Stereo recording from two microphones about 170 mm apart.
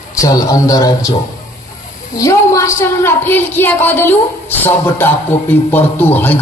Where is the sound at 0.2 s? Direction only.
20° left (ahead or behind).